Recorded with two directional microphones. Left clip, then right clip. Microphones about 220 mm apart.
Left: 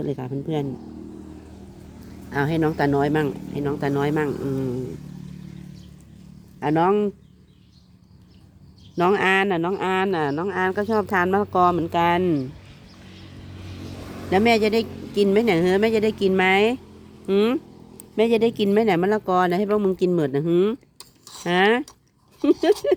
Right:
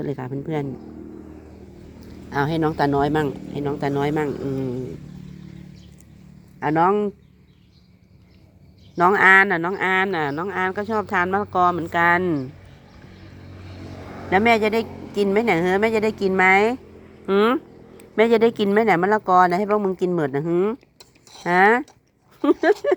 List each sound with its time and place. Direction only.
0.2 s speech: 5° left (ahead or behind)
2.3 s speech: 5° left (ahead or behind)
6.6 s speech: 10° left (ahead or behind)
9.0 s speech: 10° left (ahead or behind)
14.3 s speech: 15° left (ahead or behind)
21.4 s speech: 10° left (ahead or behind)